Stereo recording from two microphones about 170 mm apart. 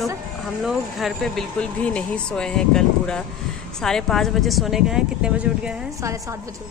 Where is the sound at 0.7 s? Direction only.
Centre (ahead or behind).